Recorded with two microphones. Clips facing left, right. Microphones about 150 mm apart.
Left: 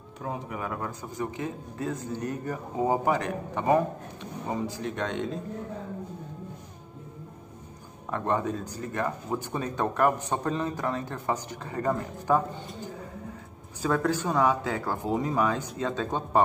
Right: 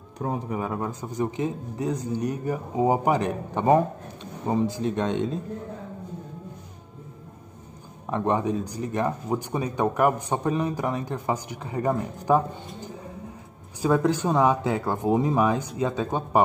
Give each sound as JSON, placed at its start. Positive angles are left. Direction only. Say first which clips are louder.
{"t": 0.2, "sound": "speech", "louder": "right 6 dB", "side_deg": -35}
{"t": 0.6, "sound": "a man's voice", "louder": "right 4 dB", "side_deg": -25}
{"t": 8.1, "sound": "speech", "louder": "right 4 dB", "side_deg": -15}
{"t": 13.8, "sound": "a man's voice", "louder": "right 4 dB", "side_deg": -20}